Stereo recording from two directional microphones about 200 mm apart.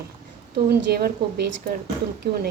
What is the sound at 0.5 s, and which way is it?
A woman's voice, 55° right (ahead or behind).